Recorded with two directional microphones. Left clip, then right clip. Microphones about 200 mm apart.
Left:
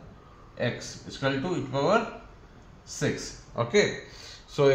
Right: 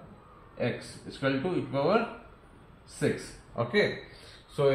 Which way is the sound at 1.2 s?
20° left (ahead or behind).